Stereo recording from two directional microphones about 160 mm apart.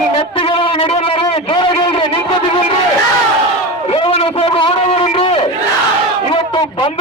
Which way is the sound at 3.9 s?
35° left (ahead or behind).